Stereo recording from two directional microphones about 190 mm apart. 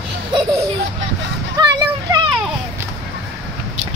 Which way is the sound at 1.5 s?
20° right (ahead or behind).